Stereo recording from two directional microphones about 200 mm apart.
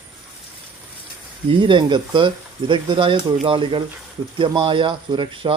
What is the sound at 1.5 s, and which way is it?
Speech, 25° right (ahead or behind).